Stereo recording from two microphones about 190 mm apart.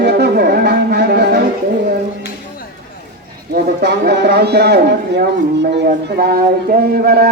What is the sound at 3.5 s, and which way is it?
A man's voice, 60° right (ahead or behind).